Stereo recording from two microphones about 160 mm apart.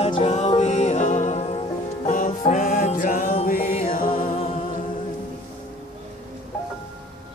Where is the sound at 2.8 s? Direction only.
50° left (ahead or behind).